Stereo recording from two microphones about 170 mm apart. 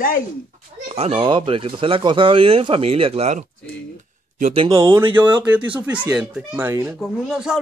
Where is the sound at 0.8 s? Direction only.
35° right (ahead or behind).